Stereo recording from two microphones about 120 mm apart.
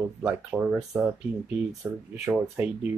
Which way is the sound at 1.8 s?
10° right (ahead or behind).